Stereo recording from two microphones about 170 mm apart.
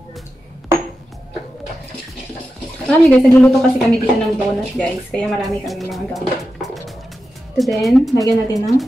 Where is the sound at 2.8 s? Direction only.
10° left (ahead or behind).